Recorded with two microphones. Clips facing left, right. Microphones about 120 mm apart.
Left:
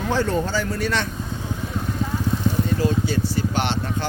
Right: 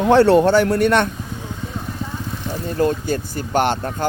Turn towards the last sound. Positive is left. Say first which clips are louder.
# right 5 dB
turn(degrees=-45)  # may be behind; listen again after turning